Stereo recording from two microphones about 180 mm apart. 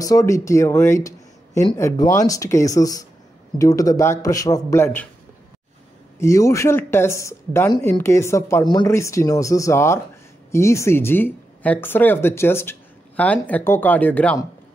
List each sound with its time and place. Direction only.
0.0 s a man's voice: 20° left (ahead or behind)
6.1 s speech: 15° left (ahead or behind)